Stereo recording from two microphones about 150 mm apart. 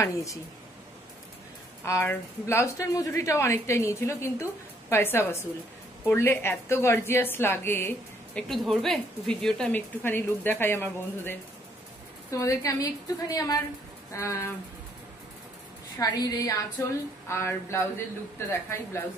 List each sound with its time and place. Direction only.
0.0 s a woman's voice: 20° left (ahead or behind)
1.9 s a woman's voice: 15° left (ahead or behind)
8.4 s a woman's voice: centre (ahead or behind); by 14.5 s 20° left (ahead or behind)
16.0 s a woman's voice: 25° left (ahead or behind)